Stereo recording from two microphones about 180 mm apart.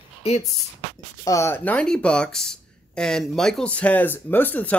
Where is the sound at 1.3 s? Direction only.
15° left (ahead or behind).